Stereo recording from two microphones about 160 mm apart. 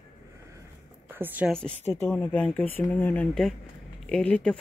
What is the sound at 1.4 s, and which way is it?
Speech, 5° left (ahead or behind).